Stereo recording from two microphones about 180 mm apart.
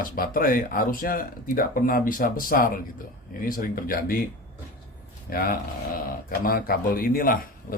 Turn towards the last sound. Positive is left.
turn(degrees=50)  # may be behind; listen again after turning